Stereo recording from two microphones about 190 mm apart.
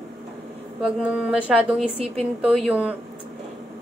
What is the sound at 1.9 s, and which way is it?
Speech, 30° right (ahead or behind).